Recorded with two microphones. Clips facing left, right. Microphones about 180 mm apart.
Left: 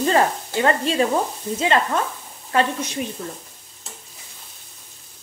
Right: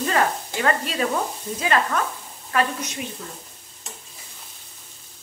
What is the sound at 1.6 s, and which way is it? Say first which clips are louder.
Sizzle: left 2 dB; 25° left (ahead or behind).